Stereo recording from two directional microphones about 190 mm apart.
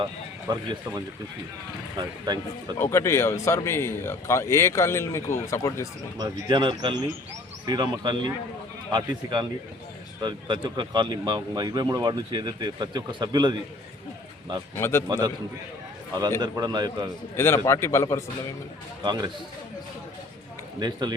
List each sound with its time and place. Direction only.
0.0 s speech: 20° right (ahead or behind)
2.7 s speech: 10° left (ahead or behind)
6.1 s speech: 20° right (ahead or behind)
14.8 s speech: 15° left (ahead or behind)
15.0 s speech: 20° right (ahead or behind)
16.4 s speech: 20° right (ahead or behind)
17.3 s speech: 15° left (ahead or behind)
19.0 s speech: 20° right (ahead or behind)
20.7 s speech: 20° right (ahead or behind)